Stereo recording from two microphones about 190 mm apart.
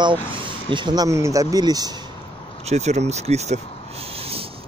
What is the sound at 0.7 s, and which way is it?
Speech, 25° right (ahead or behind).